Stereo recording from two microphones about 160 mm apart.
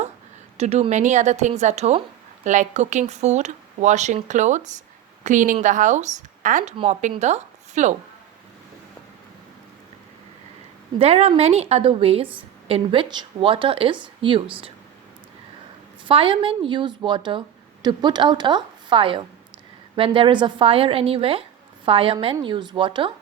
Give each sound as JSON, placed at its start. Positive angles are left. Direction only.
{"t": 0.5, "sound": "speech", "side_deg": -40}
{"t": 6.7, "sound": "a woman's voice", "side_deg": -35}
{"t": 10.9, "sound": "speech", "side_deg": -35}
{"t": 16.0, "sound": "a woman's voice", "side_deg": -35}